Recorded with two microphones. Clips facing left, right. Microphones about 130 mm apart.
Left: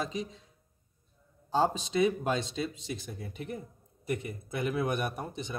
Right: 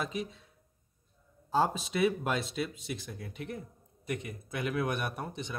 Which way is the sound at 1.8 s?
30° left (ahead or behind).